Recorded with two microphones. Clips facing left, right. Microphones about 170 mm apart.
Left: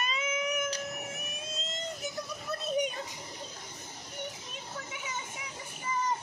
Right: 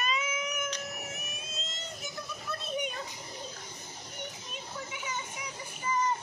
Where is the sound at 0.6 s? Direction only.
35° left (ahead or behind).